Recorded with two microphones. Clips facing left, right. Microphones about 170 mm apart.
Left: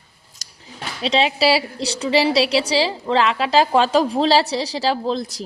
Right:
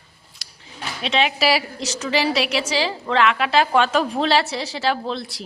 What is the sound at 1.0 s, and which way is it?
A woman's voice, 35° left (ahead or behind).